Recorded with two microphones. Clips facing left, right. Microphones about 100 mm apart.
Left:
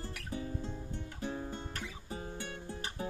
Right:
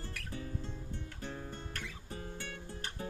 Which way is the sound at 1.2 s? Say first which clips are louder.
Left 7 dB; 15° left (ahead or behind).